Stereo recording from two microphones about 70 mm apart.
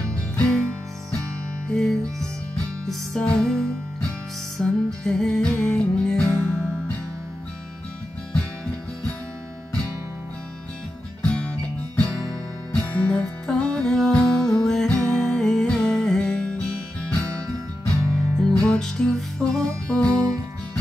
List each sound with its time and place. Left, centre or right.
1.7 s music: centre
11.2 s music: centre
12.7 s music: centre
17.8 s music: centre
20.1 s music: right